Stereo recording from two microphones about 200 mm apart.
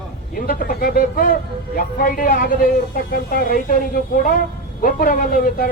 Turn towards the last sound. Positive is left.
turn(degrees=45)  # may be behind; listen again after turning